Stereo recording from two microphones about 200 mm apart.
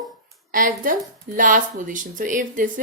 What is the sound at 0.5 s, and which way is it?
A woman's voice, 45° right (ahead or behind).